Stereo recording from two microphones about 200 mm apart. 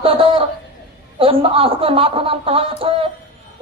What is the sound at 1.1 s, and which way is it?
A woman's voice, 25° right (ahead or behind).